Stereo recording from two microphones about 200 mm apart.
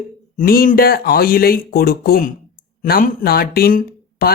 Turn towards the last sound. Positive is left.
turn(degrees=45)  # may be behind; listen again after turning